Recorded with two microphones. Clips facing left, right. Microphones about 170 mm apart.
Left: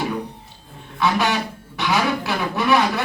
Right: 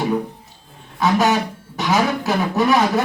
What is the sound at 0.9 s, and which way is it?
Speech, 45° right (ahead or behind).